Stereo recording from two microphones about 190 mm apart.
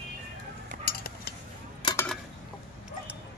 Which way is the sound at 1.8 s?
15° left (ahead or behind).